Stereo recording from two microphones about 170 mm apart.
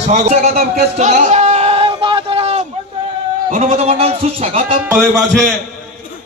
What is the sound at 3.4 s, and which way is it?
Speech, 40° right (ahead or behind).